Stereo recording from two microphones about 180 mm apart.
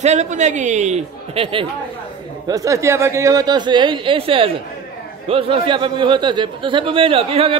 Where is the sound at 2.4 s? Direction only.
20° right (ahead or behind).